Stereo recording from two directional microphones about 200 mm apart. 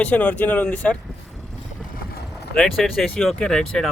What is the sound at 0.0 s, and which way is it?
Speech, 5° left (ahead or behind).